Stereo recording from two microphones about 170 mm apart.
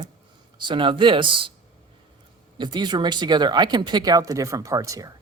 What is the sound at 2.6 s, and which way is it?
Speech, 25° right (ahead or behind).